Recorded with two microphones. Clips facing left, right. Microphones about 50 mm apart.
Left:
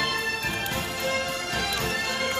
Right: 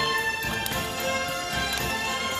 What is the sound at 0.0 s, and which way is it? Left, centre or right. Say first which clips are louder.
Music: right 1 dB; right.